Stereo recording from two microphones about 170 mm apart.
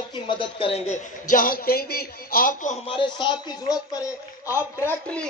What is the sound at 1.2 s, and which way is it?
Speech, 55° left (ahead or behind).